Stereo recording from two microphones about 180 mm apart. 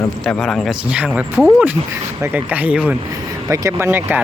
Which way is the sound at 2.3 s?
10° right (ahead or behind).